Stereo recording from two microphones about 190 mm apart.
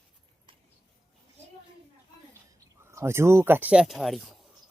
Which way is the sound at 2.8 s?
15° right (ahead or behind).